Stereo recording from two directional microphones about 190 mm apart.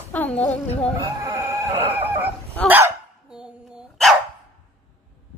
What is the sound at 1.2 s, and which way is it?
Chicken, 15° right (ahead or behind).